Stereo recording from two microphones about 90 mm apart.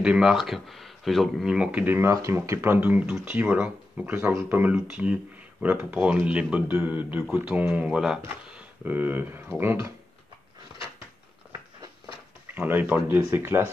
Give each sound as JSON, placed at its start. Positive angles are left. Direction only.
{"t": 0.0, "sound": "speech", "side_deg": -10}
{"t": 2.0, "sound": "speech", "side_deg": -35}
{"t": 4.2, "sound": "speech", "side_deg": -35}
{"t": 4.5, "sound": "speech", "side_deg": -20}
{"t": 12.5, "sound": "speech", "side_deg": -20}